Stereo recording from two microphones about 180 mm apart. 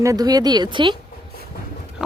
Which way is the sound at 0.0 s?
20° right (ahead or behind).